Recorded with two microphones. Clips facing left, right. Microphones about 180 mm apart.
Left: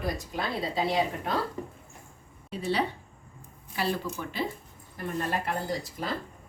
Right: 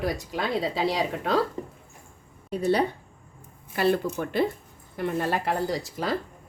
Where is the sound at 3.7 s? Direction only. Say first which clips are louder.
Right 7 dB; 55° right (ahead or behind).